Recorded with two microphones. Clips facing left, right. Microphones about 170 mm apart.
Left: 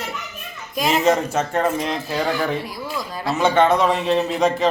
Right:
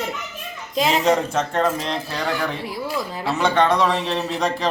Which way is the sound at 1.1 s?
10° left (ahead or behind).